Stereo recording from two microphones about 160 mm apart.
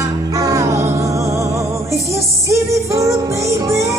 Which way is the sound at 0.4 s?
20° right (ahead or behind).